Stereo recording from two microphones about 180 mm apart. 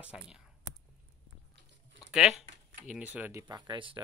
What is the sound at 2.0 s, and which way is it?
Speech, 5° right (ahead or behind).